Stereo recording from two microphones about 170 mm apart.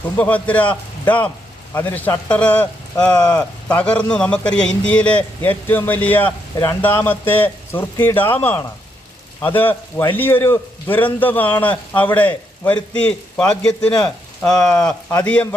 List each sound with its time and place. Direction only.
0.2 s speech: 10° left (ahead or behind)
2.9 s speech: 20° left (ahead or behind)
3.7 s speech: 5° left (ahead or behind)
9.4 s speech: 10° left (ahead or behind)